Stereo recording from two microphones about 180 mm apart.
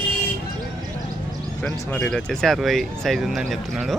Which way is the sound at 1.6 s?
5° left (ahead or behind).